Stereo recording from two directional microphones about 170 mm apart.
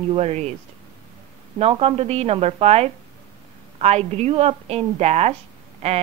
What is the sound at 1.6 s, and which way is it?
A woman's voice, 35° right (ahead or behind).